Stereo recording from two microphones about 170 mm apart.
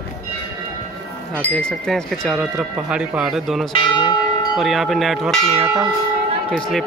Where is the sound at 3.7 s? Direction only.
30° left (ahead or behind).